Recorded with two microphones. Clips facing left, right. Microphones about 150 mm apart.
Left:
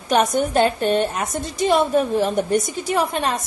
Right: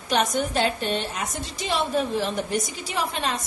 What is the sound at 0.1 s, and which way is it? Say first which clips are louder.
A woman's voice: left 5 dB; 50° left (ahead or behind).